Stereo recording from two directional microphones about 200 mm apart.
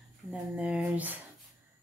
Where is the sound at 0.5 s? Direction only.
5° right (ahead or behind).